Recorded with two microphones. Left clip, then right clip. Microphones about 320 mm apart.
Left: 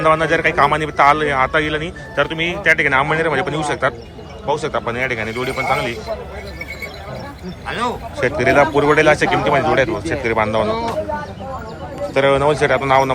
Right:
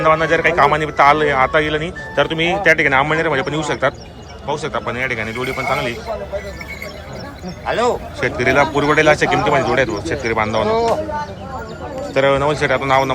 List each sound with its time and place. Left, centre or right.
0.0 s a man's voice: centre
7.7 s a man's voice: right
8.2 s a man's voice: centre
12.1 s a man's voice: centre